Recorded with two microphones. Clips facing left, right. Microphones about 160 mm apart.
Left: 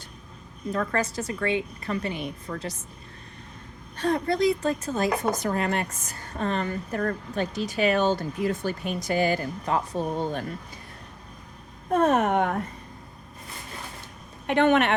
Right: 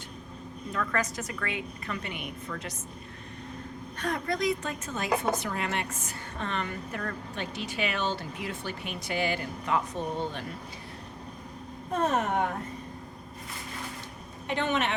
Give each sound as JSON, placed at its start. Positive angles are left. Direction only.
{"t": 0.7, "sound": "a woman's voice", "side_deg": 35}
{"t": 3.9, "sound": "a woman's voice", "side_deg": 30}
{"t": 11.9, "sound": "speech", "side_deg": 60}
{"t": 14.4, "sound": "speech", "side_deg": 60}